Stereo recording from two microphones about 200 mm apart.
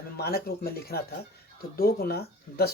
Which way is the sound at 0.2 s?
50° left (ahead or behind).